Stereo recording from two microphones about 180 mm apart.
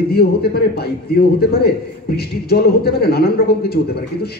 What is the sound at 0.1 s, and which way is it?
A man's voice, 60° left (ahead or behind).